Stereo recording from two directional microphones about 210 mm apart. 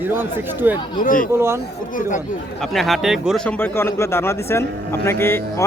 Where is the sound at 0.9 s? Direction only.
40° left (ahead or behind).